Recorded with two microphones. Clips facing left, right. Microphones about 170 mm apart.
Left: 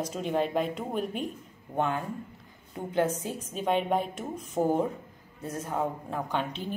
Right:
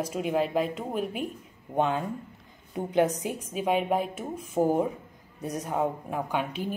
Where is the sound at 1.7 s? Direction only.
20° right (ahead or behind).